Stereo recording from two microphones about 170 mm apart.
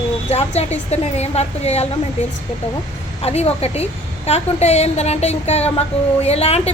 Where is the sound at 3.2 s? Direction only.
35° left (ahead or behind).